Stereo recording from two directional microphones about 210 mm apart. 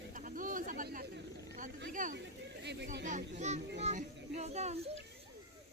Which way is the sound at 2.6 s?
55° right (ahead or behind).